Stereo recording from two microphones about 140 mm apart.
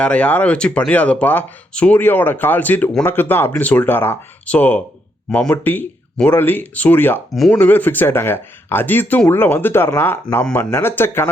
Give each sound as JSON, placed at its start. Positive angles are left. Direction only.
{"t": 0.0, "sound": "speech", "side_deg": 10}
{"t": 7.3, "sound": "speech", "side_deg": 0}
{"t": 7.6, "sound": "speech", "side_deg": 15}